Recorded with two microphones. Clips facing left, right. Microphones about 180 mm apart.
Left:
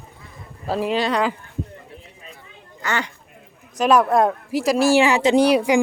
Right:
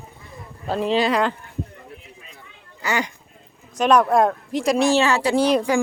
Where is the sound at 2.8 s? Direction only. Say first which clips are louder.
Right 1 dB; 10° right (ahead or behind).